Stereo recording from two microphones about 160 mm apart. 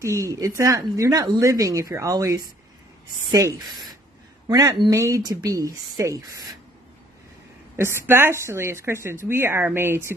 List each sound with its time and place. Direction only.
0.0 s speech: 20° right (ahead or behind)
7.7 s a woman's voice: 15° right (ahead or behind)